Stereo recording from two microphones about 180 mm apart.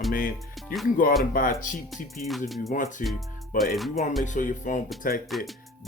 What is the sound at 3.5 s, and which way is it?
Music, centre (ahead or behind).